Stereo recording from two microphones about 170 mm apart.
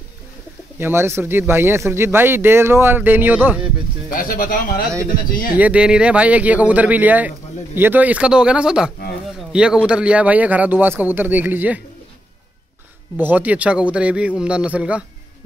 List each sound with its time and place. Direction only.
0.7 s speech: 15° right (ahead or behind)
4.1 s speech: 55° left (ahead or behind)
5.6 s speech: 5° right (ahead or behind)
13.2 s speech: 10° right (ahead or behind)